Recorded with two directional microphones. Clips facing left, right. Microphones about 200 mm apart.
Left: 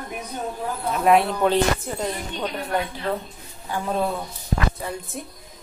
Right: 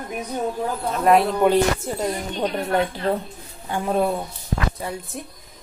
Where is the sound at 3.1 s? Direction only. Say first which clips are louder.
Right 3 dB; 35° right (ahead or behind).